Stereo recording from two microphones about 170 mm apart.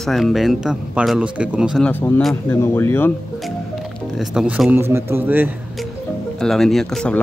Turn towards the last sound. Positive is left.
turn(degrees=5)  # may be behind; listen again after turning